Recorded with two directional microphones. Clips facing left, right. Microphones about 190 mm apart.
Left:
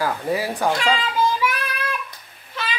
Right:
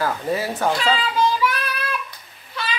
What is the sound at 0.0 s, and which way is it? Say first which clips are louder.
A child's voice: even; 10° left (ahead or behind).